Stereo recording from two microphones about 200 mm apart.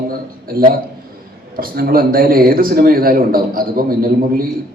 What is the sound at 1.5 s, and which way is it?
A man's voice, 50° right (ahead or behind).